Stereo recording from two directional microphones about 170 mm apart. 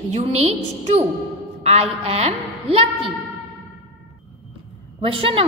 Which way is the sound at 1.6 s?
40° right (ahead or behind).